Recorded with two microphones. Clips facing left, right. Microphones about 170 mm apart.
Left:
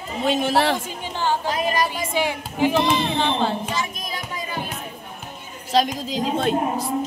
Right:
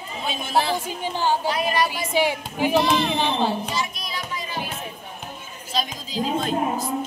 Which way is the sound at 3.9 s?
45° left (ahead or behind).